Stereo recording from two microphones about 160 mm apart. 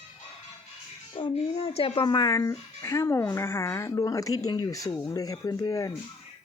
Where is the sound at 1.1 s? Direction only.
35° left (ahead or behind).